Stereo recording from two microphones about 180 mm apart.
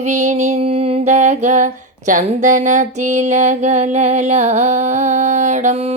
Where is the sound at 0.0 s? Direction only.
40° right (ahead or behind).